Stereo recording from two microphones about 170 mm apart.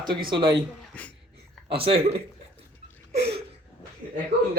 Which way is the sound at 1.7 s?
35° right (ahead or behind).